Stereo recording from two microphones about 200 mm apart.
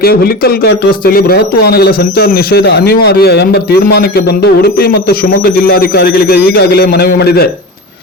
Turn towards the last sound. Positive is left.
turn(degrees=50)  # may be behind; listen again after turning